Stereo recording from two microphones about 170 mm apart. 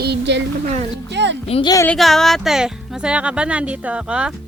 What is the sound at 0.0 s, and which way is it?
A child's voice, 85° right.